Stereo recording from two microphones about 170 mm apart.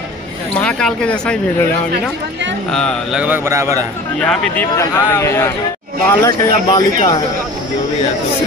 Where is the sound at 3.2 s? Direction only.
15° right (ahead or behind).